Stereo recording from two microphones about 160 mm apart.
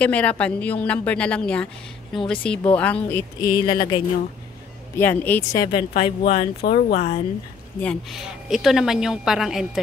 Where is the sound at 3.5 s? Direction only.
30° left (ahead or behind).